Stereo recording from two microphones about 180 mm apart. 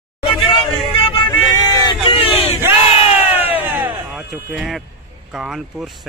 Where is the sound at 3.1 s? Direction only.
10° right (ahead or behind).